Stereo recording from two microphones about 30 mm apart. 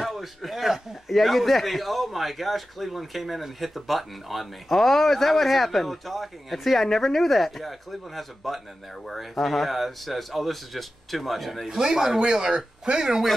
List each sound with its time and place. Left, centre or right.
0.0 s a man's voice: centre
11.8 s speech: centre; by 13.0 s right